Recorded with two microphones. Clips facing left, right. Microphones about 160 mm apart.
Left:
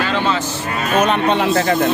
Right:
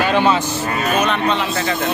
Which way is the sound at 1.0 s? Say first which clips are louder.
Left 3 dB; 50° left (ahead or behind).